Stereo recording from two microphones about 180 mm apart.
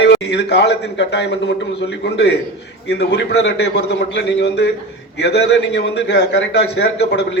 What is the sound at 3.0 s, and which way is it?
A man's voice, 70° left (ahead or behind).